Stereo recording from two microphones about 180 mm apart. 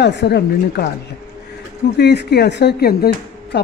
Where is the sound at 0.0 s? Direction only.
70° left (ahead or behind).